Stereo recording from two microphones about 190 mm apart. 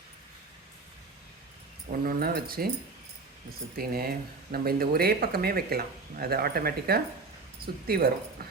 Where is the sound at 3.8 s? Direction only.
55° right (ahead or behind).